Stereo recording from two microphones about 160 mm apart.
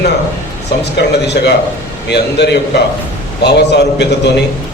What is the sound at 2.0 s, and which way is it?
A man's voice, 90° left.